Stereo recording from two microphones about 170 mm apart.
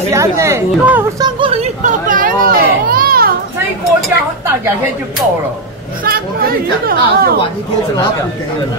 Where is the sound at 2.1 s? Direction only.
55° right (ahead or behind).